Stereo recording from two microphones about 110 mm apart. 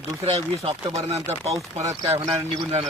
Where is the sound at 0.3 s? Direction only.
60° right (ahead or behind).